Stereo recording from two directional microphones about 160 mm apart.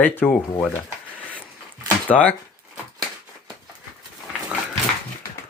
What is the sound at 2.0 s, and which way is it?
Speech, 10° left (ahead or behind).